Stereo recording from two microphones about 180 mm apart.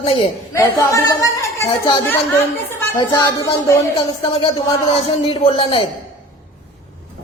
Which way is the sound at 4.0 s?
30° left (ahead or behind).